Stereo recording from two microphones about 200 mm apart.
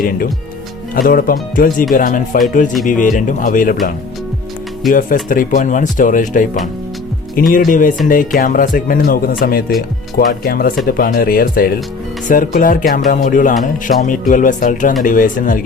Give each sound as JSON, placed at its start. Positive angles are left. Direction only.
{"t": 0.9, "sound": "speech", "side_deg": 45}
{"t": 4.9, "sound": "speech", "side_deg": 45}